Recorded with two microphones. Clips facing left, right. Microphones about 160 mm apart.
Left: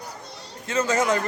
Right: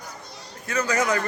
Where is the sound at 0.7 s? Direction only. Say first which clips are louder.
Left 2 dB; 25° left (ahead or behind).